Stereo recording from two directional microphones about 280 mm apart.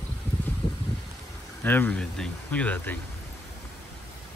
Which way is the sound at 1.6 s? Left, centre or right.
Centre.